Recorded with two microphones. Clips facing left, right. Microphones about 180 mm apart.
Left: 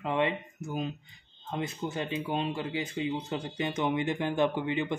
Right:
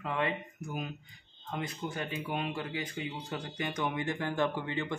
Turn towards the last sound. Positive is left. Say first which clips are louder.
# left 4 dB
turn(degrees=15)  # may be behind; listen again after turning